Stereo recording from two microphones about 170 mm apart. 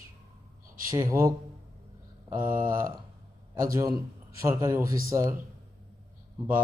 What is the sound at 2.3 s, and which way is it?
Speech, 55° right (ahead or behind).